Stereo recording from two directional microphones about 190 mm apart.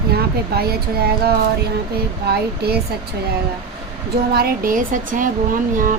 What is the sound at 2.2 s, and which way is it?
Speech, 55° right (ahead or behind).